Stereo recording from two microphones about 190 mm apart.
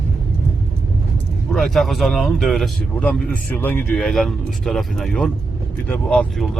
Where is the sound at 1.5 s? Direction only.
Centre (ahead or behind).